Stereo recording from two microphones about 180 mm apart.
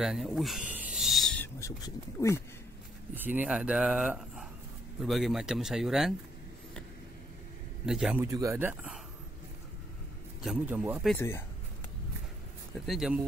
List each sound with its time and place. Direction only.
0.0 s owl: centre (ahead or behind)
1.6 s speech: 15° left (ahead or behind)
3.2 s speech: 10° right (ahead or behind)
7.8 s speech: 5° right (ahead or behind)
8.2 s speech: 15° right (ahead or behind)
10.4 s speech: 5° right (ahead or behind)
11.1 s speech: 15° left (ahead or behind)
12.8 s speech: centre (ahead or behind)